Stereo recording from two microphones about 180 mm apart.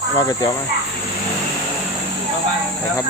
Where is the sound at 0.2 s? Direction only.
20° left (ahead or behind).